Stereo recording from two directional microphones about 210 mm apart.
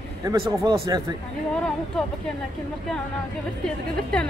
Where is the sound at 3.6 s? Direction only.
5° left (ahead or behind).